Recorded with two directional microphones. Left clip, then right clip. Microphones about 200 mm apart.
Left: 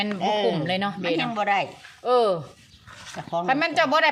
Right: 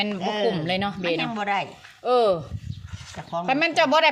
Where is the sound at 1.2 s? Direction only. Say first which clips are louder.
Left 2 dB; 40° left (ahead or behind).